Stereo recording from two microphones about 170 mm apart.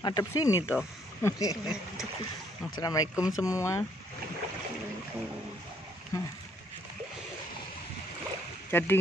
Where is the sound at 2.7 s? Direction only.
20° left (ahead or behind).